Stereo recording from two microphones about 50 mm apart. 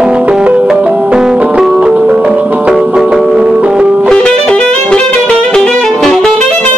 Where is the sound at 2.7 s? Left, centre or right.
Centre.